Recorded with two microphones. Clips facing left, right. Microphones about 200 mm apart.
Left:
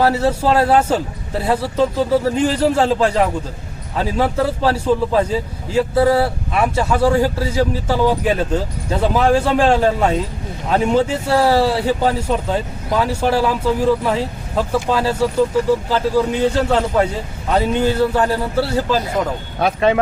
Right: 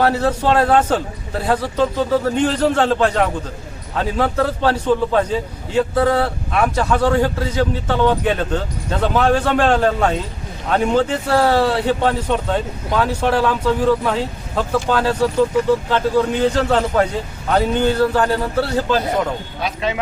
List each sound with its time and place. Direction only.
0.0 s a man's voice: 5° left (ahead or behind)
19.5 s speech: 55° left (ahead or behind)